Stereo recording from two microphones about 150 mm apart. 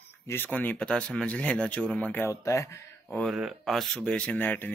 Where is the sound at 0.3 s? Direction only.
10° left (ahead or behind).